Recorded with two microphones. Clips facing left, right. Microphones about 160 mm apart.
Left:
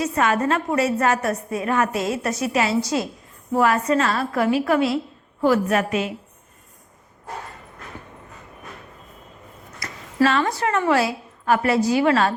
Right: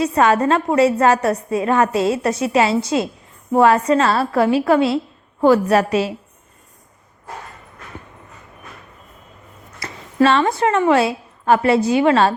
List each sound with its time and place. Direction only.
0.0 s a woman's voice: 30° right (ahead or behind)
9.8 s a sound: 30° right (ahead or behind)
10.6 s a woman's voice: 25° right (ahead or behind)